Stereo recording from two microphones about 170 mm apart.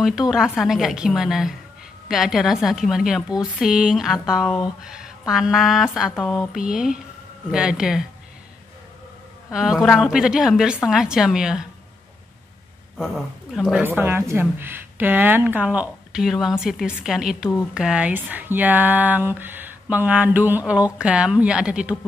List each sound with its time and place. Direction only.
0.3 s a woman's voice: centre (ahead or behind)
4.8 s a sound: 5° right (ahead or behind)
5.3 s a woman's voice: centre (ahead or behind)
9.5 s a woman's voice: 5° right (ahead or behind)
12.9 s speech: centre (ahead or behind)